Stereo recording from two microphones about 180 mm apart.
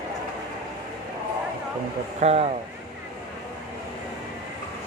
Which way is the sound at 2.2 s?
35° right (ahead or behind).